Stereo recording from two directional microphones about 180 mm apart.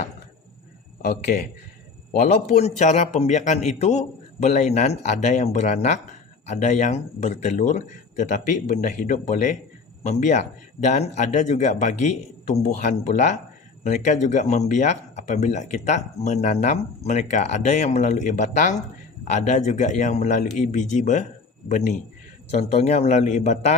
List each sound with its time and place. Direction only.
1.0 s a man's voice: 55° left (ahead or behind)